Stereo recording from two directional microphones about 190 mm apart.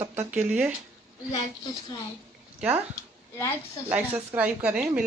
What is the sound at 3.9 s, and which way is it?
Speech, 5° right (ahead or behind).